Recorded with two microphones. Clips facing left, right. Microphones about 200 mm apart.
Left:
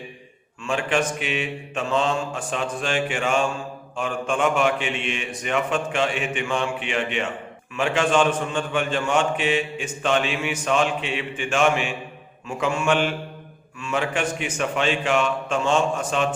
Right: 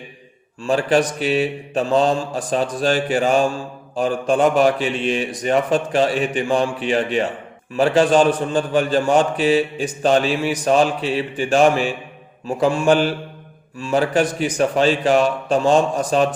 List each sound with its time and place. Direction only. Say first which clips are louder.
0.6 s mantra: right 6 dB; 35° right (ahead or behind)